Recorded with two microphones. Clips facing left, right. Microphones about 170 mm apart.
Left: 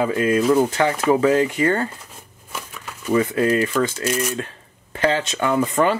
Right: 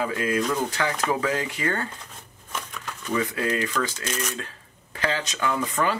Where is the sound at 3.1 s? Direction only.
30° left (ahead or behind).